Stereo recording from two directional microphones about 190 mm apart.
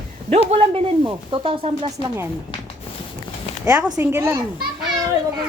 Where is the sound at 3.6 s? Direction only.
10° right (ahead or behind).